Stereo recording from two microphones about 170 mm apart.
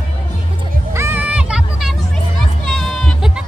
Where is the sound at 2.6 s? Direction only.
5° left (ahead or behind).